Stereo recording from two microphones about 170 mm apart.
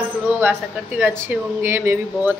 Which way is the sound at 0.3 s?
10° right (ahead or behind).